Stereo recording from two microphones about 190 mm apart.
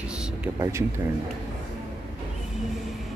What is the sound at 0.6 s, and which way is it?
Speech, 15° right (ahead or behind).